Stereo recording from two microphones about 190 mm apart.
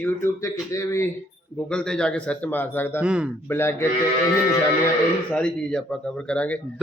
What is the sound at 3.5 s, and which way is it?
Speech, 10° left (ahead or behind).